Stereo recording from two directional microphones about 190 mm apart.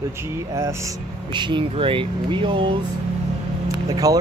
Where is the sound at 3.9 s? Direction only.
20° right (ahead or behind).